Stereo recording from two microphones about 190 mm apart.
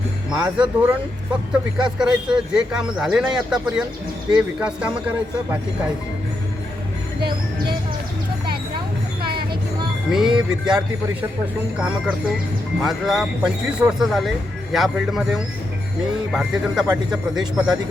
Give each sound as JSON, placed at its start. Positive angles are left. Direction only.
{"t": 0.3, "sound": "speech", "side_deg": -5}
{"t": 9.2, "sound": "vehicle", "side_deg": -55}
{"t": 10.1, "sound": "speech", "side_deg": 0}
{"t": 12.8, "sound": "speech", "side_deg": 0}